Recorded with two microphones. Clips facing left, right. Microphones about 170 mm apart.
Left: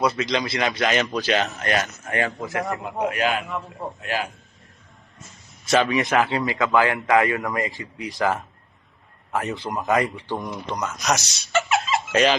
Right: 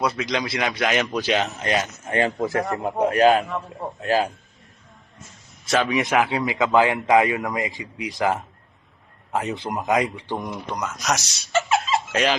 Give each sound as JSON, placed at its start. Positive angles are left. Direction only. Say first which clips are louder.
{"t": 0.0, "sound": "a man's voice", "louder": "left 1 dB", "side_deg": -5}
{"t": 2.4, "sound": "a man's voice", "louder": "right 4 dB", "side_deg": -35}
{"t": 5.6, "sound": "a man's voice", "louder": "left 2 dB", "side_deg": 0}
{"t": 5.9, "sound": "speech", "louder": "even", "side_deg": -15}